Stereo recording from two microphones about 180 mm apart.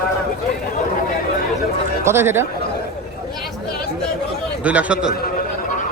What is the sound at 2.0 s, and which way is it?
Speech, 15° right (ahead or behind).